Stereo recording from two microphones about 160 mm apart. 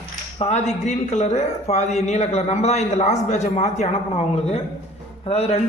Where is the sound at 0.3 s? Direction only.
45° left (ahead or behind).